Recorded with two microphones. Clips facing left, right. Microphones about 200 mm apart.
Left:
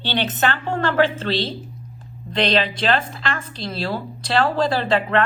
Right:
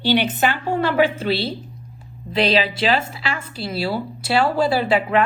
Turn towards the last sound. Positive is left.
turn(degrees=-10)  # may be behind; listen again after turning